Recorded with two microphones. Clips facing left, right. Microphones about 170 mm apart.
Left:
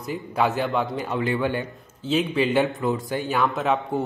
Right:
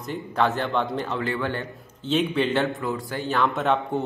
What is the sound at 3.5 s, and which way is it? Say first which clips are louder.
Speech: even; centre (ahead or behind).